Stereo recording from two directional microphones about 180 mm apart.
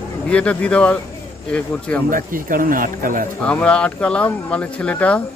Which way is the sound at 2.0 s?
50° right (ahead or behind).